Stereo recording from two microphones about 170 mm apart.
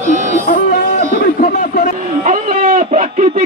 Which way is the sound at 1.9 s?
50° right (ahead or behind).